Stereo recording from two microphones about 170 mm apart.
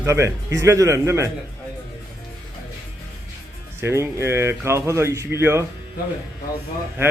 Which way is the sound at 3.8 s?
15° right (ahead or behind).